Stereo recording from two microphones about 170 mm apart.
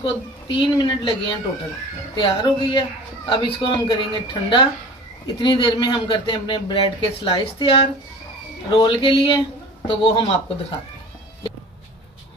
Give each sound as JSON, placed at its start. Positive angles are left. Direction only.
{"t": 0.0, "sound": "a woman's voice", "side_deg": 30}